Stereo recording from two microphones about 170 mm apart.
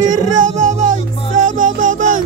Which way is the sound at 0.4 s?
50° right (ahead or behind).